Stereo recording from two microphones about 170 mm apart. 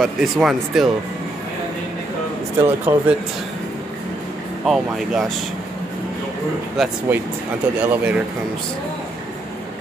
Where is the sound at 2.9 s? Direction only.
15° right (ahead or behind).